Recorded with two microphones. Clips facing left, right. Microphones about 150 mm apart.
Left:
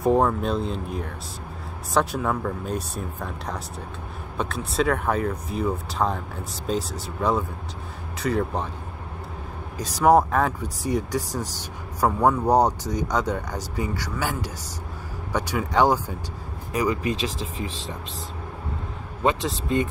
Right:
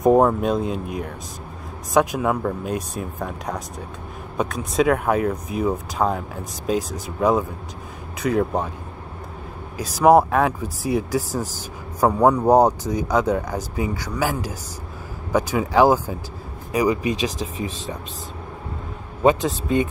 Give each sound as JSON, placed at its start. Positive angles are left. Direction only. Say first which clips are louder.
{"t": 0.0, "sound": "speech", "louder": "right 5 dB", "side_deg": -15}
{"t": 9.8, "sound": "speech", "louder": "right 3 dB", "side_deg": -10}
{"t": 15.7, "sound": "speech", "louder": "right 4 dB", "side_deg": -10}